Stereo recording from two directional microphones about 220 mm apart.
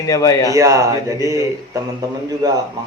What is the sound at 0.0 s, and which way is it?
Speech, 15° left (ahead or behind).